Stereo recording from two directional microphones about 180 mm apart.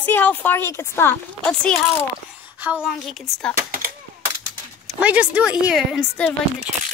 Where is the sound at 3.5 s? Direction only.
50° right (ahead or behind).